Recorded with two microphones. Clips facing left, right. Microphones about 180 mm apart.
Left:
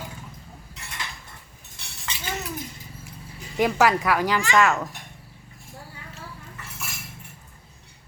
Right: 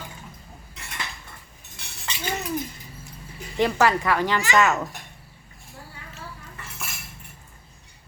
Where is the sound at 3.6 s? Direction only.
10° left (ahead or behind).